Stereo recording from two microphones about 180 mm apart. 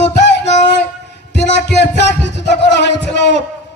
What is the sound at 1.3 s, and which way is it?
Music, 70° left (ahead or behind).